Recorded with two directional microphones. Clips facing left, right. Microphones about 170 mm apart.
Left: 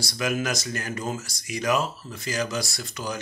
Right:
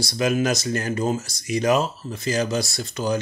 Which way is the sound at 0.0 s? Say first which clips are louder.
Right 6 dB; 25° right (ahead or behind).